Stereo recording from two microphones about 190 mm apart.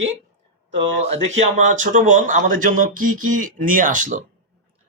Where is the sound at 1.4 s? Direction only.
40° right (ahead or behind).